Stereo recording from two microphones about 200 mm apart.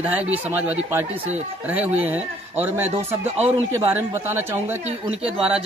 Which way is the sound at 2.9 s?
30° right (ahead or behind).